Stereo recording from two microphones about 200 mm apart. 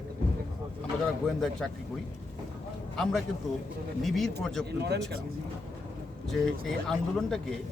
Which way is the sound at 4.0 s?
Centre (ahead or behind).